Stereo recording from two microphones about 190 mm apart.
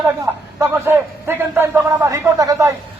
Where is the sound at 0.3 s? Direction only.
10° right (ahead or behind).